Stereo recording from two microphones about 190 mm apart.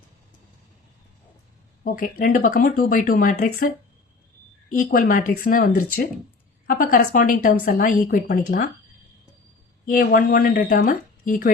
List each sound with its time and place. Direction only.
1.8 s a woman's voice: 45° left (ahead or behind)
4.8 s a woman's voice: 50° left (ahead or behind)
9.8 s a woman's voice: 45° left (ahead or behind)